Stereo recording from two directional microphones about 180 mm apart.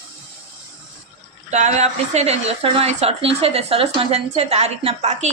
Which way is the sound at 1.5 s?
40° right (ahead or behind).